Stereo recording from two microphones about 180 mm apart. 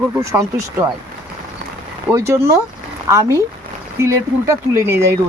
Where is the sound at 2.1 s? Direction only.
15° right (ahead or behind).